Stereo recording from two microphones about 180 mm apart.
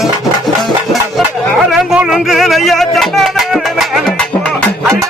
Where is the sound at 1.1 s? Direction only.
Centre (ahead or behind).